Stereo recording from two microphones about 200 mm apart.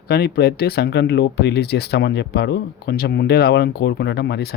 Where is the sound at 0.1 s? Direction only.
50° left (ahead or behind).